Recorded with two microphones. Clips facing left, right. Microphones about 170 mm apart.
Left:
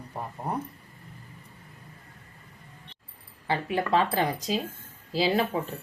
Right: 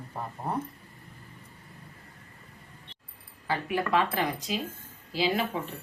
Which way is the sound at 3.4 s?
25° left (ahead or behind).